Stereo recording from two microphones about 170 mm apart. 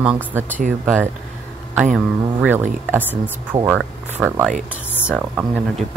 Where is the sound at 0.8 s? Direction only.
15° right (ahead or behind).